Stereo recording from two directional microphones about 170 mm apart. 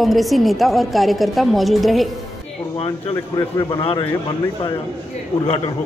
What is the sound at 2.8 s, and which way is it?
Speech, 30° left (ahead or behind).